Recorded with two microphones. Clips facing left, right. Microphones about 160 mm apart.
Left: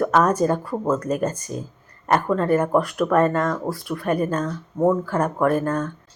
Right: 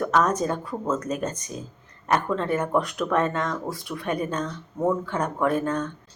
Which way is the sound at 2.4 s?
45° left (ahead or behind).